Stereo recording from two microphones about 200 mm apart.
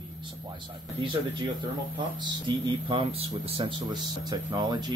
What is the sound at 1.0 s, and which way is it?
Speech, 25° right (ahead or behind).